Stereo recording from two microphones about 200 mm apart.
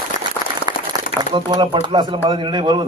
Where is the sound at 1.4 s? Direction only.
25° right (ahead or behind).